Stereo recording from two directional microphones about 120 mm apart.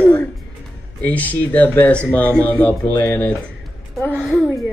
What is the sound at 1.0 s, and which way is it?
Speech, 15° left (ahead or behind).